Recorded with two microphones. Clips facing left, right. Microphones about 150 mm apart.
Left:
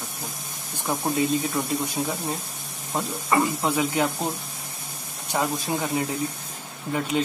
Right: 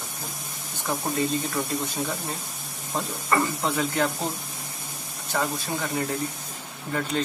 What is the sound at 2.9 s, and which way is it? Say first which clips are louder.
Speech: left 2 dB; 10° left (ahead or behind).